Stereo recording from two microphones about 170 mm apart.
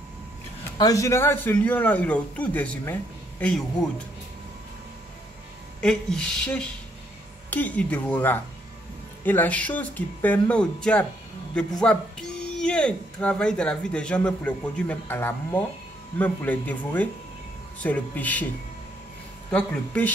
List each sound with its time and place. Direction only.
0.7 s a man's voice: 20° left (ahead or behind)
5.8 s a man's voice: 5° left (ahead or behind)
19.5 s a man's voice: 5° left (ahead or behind)